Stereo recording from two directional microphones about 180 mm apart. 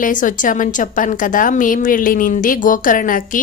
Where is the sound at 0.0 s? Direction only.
45° left (ahead or behind).